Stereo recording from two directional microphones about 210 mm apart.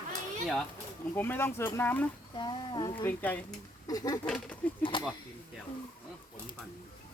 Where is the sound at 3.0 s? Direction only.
10° left (ahead or behind).